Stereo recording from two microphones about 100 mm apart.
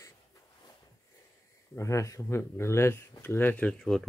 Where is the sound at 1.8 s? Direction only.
30° left (ahead or behind).